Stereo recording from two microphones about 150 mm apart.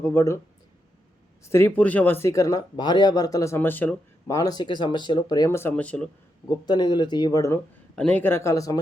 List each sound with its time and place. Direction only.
0.0 s speech: 20° left (ahead or behind)
1.5 s speech: 15° left (ahead or behind)
6.5 s speech: 30° left (ahead or behind)
7.9 s speech: 10° left (ahead or behind)